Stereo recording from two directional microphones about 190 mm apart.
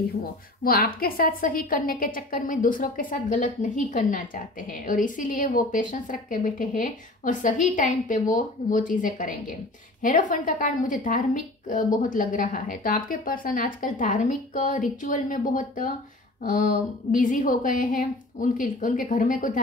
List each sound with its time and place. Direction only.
0.7 s a woman's voice: 50° left (ahead or behind)